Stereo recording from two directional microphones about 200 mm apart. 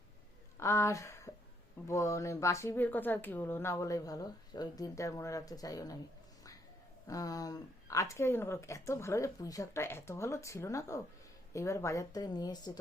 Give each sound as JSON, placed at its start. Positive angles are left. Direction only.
{"t": 0.6, "sound": "speech", "side_deg": 15}
{"t": 7.1, "sound": "a woman's voice", "side_deg": 15}